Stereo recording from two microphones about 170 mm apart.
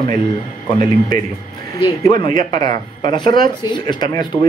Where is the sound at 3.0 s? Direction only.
25° left (ahead or behind).